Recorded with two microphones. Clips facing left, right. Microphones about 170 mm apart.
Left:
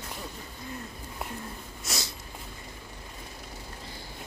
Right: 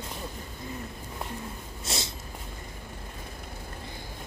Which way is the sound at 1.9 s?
30° right (ahead or behind).